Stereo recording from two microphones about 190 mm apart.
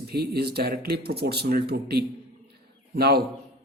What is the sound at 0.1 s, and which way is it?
A man's voice, 55° right (ahead or behind).